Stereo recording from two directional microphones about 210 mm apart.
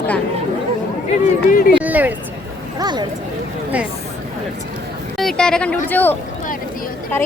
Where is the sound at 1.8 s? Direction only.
10° right (ahead or behind).